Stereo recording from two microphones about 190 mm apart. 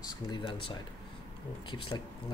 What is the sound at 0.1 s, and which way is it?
Speech, 25° left (ahead or behind).